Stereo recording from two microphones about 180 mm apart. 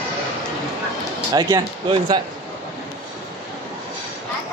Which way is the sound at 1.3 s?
25° right (ahead or behind).